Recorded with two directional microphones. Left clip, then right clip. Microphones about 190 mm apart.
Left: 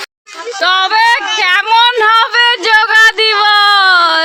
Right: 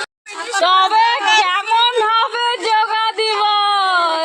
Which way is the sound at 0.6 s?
15° left (ahead or behind).